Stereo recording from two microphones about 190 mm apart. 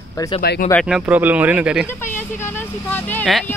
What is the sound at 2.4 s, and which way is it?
Speech, 10° left (ahead or behind).